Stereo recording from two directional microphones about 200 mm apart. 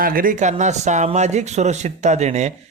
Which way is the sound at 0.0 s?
45° right (ahead or behind).